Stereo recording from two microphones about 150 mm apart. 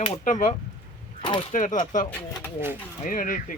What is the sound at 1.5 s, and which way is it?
Speech, 60° left (ahead or behind).